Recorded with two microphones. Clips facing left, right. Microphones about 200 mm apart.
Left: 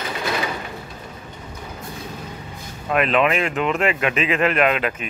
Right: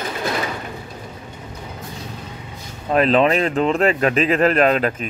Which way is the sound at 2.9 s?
35° right (ahead or behind).